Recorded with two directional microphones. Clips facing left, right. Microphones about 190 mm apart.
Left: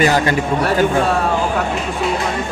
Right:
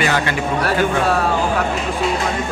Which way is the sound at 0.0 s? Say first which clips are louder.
Left 4 dB; 40° left (ahead or behind).